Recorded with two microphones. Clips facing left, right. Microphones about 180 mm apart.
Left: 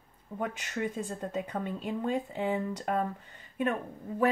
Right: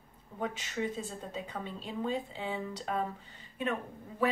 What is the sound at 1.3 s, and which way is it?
Speech, 55° left (ahead or behind).